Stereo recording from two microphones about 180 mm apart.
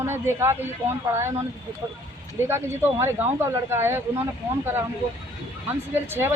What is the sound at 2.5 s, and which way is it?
Speech, 15° right (ahead or behind).